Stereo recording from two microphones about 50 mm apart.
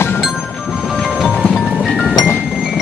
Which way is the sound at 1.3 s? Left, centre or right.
Centre.